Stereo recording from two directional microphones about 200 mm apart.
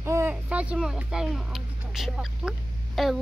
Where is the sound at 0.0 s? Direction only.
15° right (ahead or behind).